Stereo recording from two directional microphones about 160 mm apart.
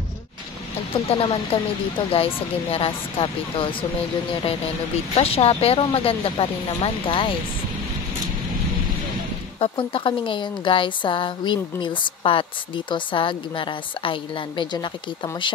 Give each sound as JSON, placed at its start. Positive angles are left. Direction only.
{"t": 1.0, "sound": "speech", "side_deg": 35}
{"t": 5.1, "sound": "speech", "side_deg": 35}
{"t": 9.6, "sound": "speech", "side_deg": 35}